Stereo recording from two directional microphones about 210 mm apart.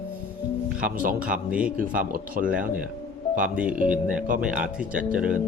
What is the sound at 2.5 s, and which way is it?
Speech, 5° right (ahead or behind).